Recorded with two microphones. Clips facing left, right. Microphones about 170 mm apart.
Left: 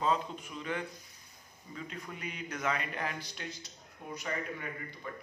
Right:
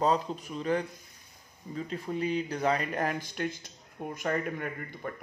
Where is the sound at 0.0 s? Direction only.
40° right (ahead or behind).